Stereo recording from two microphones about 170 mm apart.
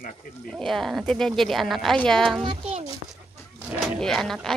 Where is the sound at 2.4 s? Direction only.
40° right (ahead or behind).